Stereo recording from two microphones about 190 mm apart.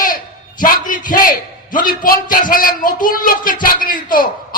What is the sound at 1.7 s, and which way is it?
A man's voice, 45° left (ahead or behind).